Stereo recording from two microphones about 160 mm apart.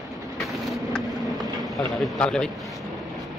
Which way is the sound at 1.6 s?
Centre (ahead or behind).